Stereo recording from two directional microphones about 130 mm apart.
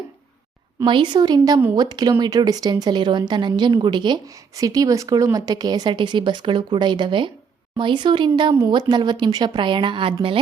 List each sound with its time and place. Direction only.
0.9 s speech: 35° right (ahead or behind)